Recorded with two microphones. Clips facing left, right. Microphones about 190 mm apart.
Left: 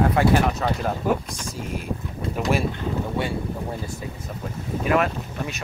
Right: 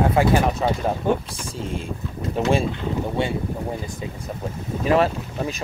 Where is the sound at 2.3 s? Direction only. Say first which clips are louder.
Right 3 dB; 25° right (ahead or behind).